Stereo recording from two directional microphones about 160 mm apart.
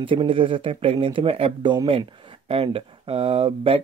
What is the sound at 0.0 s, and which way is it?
Speech, 35° right (ahead or behind).